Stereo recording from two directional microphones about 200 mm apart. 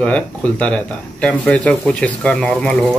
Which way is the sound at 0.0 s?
5° left (ahead or behind).